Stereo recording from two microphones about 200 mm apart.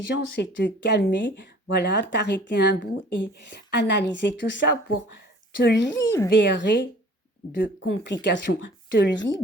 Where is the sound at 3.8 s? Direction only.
60° left (ahead or behind).